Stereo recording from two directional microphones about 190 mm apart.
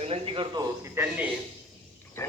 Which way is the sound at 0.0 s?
30° right (ahead or behind).